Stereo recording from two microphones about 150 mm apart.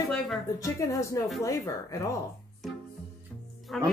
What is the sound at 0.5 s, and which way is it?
Speech, 20° left (ahead or behind).